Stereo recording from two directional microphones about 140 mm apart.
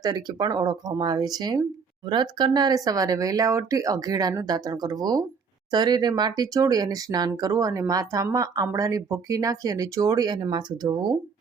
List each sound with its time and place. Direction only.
0.0 s speech: 30° right (ahead or behind)